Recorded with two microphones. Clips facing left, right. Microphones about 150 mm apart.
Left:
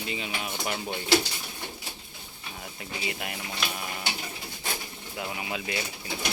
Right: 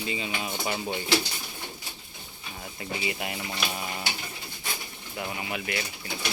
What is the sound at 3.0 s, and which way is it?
Speech, 5° right (ahead or behind).